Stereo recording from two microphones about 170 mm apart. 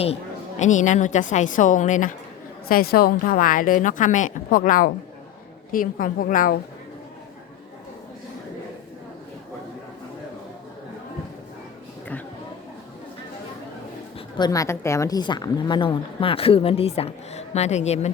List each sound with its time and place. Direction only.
0.6 s a woman's voice: 45° left (ahead or behind)
2.6 s a woman's voice: 60° left (ahead or behind)
14.3 s a woman's voice: 20° left (ahead or behind); by 18.1 s 40° left (ahead or behind)